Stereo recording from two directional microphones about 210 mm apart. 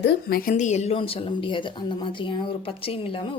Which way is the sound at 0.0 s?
50° left (ahead or behind).